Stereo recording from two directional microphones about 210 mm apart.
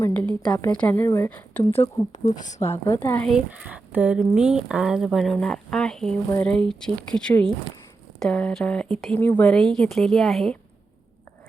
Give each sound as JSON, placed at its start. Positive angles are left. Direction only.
{"t": 0.0, "sound": "a woman's voice", "side_deg": 10}
{"t": 1.8, "sound": "speech", "side_deg": 35}
{"t": 2.6, "sound": "a woman's voice", "side_deg": 15}